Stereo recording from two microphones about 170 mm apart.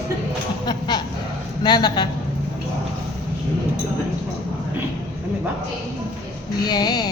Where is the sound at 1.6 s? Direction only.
25° left (ahead or behind).